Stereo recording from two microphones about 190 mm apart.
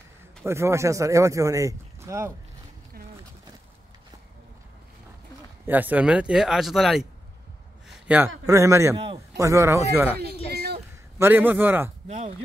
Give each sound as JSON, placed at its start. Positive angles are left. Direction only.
{"t": 0.5, "sound": "speech", "side_deg": -15}
{"t": 5.7, "sound": "speech", "side_deg": -10}
{"t": 7.9, "sound": "a sound", "side_deg": -5}
{"t": 8.5, "sound": "speech", "side_deg": -15}
{"t": 8.9, "sound": "a man's voice", "side_deg": -30}
{"t": 9.4, "sound": "speech", "side_deg": -15}
{"t": 10.5, "sound": "a sound", "side_deg": -55}
{"t": 11.1, "sound": "speech", "side_deg": -10}
{"t": 12.1, "sound": "speech", "side_deg": -35}